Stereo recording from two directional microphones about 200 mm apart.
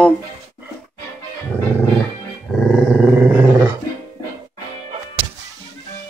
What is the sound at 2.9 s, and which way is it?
Dog, 10° right (ahead or behind).